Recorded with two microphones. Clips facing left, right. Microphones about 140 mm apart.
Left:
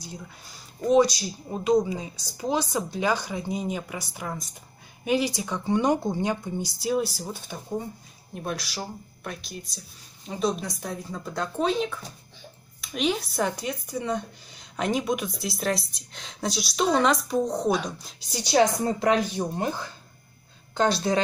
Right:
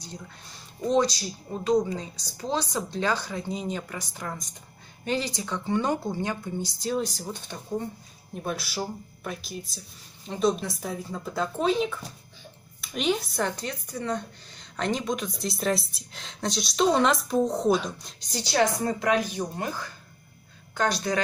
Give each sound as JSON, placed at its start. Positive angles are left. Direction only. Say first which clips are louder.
{"t": 0.0, "sound": "speech", "louder": "left 1 dB", "side_deg": 10}
{"t": 13.6, "sound": "speech", "louder": "left 3 dB", "side_deg": 10}
{"t": 18.3, "sound": "speech", "louder": "left 3 dB", "side_deg": 15}
{"t": 18.9, "sound": "speech", "louder": "left 3 dB", "side_deg": 30}